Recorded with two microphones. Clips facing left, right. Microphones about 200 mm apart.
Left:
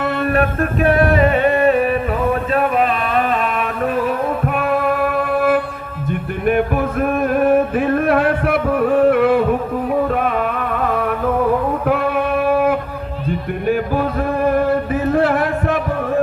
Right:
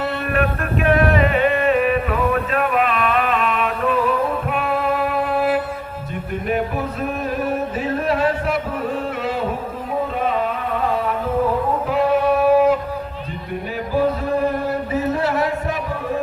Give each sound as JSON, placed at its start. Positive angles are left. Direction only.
{"t": 0.0, "sound": "music", "side_deg": 45}
{"t": 11.9, "sound": "a sound", "side_deg": 60}
{"t": 15.1, "sound": "music", "side_deg": 55}